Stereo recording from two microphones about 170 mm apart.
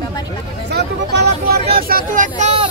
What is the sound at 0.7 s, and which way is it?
Speech, 75° right (ahead or behind).